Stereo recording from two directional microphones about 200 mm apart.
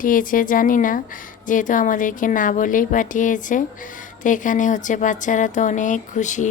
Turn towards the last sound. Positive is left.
turn(degrees=35)  # may be behind; listen again after turning